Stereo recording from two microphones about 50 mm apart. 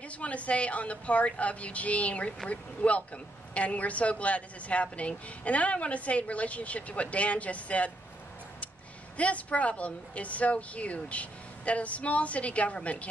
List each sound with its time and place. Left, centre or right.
0.2 s speech: left
9.1 s speech: left